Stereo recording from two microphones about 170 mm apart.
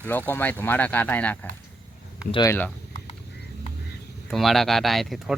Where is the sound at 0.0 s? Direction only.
10° left (ahead or behind).